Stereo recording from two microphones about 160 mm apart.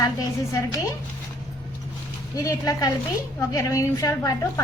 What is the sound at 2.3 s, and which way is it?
A woman's voice, 20° left (ahead or behind).